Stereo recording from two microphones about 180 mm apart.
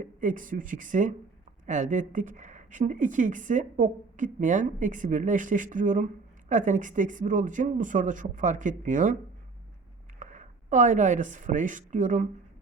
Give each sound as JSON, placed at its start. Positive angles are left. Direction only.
{"t": 0.0, "sound": "speech", "side_deg": -45}
{"t": 10.2, "sound": "speech", "side_deg": -45}